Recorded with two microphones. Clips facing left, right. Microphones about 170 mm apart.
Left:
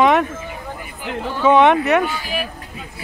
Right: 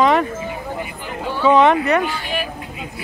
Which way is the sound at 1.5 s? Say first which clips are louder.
Left 1 dB; centre (ahead or behind).